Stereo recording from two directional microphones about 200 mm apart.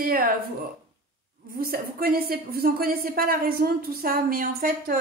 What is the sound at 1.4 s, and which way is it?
Speech, 45° right (ahead or behind).